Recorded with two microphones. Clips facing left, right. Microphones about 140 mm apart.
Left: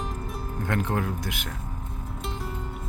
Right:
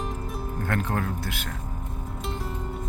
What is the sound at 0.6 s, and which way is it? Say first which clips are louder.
Speech: left 1 dB; 15° left (ahead or behind).